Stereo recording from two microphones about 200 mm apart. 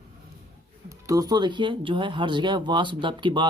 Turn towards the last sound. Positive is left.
turn(degrees=-25)  # may be behind; listen again after turning